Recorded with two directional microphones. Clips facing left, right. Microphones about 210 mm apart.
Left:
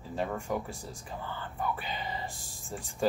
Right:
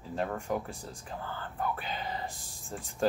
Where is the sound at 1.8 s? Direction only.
Centre (ahead or behind).